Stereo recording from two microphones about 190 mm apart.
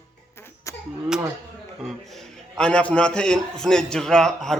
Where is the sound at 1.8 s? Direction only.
Centre (ahead or behind).